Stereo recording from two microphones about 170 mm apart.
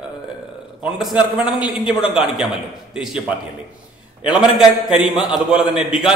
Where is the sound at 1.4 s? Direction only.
25° left (ahead or behind).